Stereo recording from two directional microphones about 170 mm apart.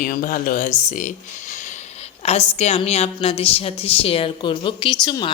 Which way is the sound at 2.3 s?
40° left (ahead or behind).